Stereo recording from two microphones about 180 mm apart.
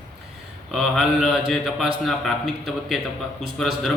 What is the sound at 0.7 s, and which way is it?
A man's voice, centre (ahead or behind).